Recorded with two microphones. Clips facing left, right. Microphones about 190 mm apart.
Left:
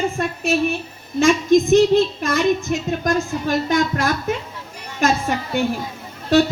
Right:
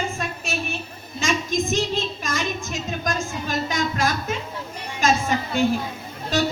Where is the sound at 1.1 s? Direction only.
60° left (ahead or behind).